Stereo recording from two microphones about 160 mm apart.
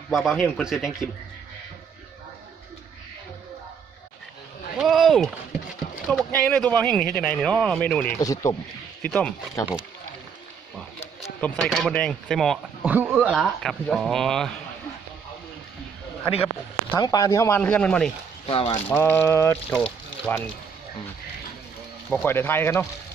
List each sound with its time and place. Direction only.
0.1 s speech: centre (ahead or behind)
4.7 s speech: centre (ahead or behind)
8.2 s speech: 20° left (ahead or behind)
9.0 s speech: 5° left (ahead or behind)
11.4 s speech: 5° left (ahead or behind)
12.8 s speech: 10° right (ahead or behind)
17.0 s speech: 20° left (ahead or behind)
17.6 s speech: 10° left (ahead or behind)
18.5 s speech: 30° left (ahead or behind)
18.9 s speech: 15° left (ahead or behind)
19.7 s speech: 5° left (ahead or behind)
22.1 s speech: 15° left (ahead or behind)